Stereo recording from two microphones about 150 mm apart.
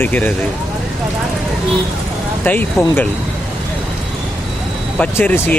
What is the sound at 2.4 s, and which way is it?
Speech, 10° left (ahead or behind).